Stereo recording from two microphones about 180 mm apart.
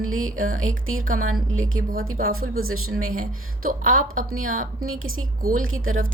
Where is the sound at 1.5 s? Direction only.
90° right.